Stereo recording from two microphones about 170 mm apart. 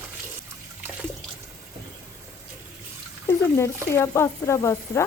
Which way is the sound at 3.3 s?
15° left (ahead or behind).